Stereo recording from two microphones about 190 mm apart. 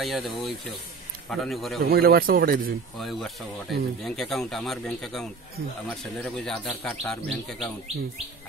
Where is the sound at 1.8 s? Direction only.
55° right (ahead or behind).